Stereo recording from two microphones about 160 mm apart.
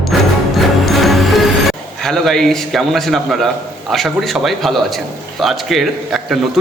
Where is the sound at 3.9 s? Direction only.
Centre (ahead or behind).